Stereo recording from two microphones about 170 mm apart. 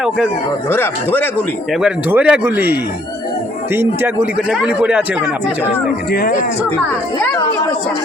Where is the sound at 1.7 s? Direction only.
5° right (ahead or behind).